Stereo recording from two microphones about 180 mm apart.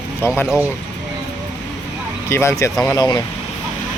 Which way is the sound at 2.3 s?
15° left (ahead or behind).